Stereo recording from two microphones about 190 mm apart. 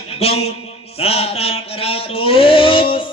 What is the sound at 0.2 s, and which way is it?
Music, 30° left (ahead or behind).